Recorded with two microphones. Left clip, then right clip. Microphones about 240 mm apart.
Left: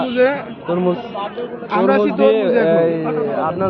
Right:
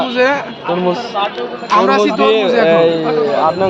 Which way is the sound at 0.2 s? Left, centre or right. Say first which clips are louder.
Right 2 dB; right.